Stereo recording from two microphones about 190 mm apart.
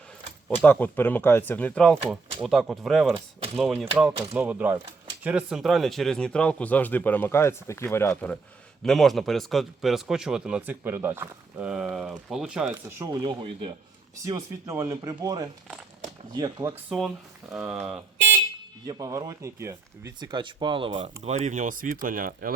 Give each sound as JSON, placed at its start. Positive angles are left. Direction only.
{"t": 0.4, "sound": "speech", "side_deg": 10}
{"t": 12.8, "sound": "speech", "side_deg": -20}
{"t": 17.5, "sound": "speech", "side_deg": -10}
{"t": 18.9, "sound": "speech", "side_deg": -20}